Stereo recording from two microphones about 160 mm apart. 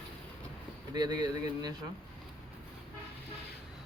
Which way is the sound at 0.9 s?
25° right (ahead or behind).